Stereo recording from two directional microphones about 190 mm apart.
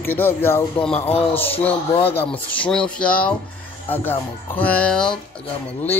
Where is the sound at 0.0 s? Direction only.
10° left (ahead or behind).